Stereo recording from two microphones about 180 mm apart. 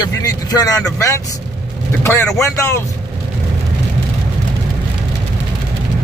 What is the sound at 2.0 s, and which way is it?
Speech, 15° left (ahead or behind).